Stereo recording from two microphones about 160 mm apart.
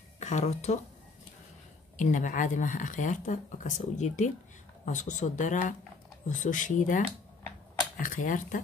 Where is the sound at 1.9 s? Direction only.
55° left (ahead or behind).